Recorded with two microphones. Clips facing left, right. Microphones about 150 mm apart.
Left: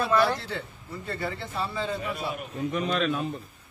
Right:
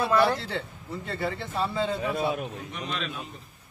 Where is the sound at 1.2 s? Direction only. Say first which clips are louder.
Right 3 dB; 20° right (ahead or behind).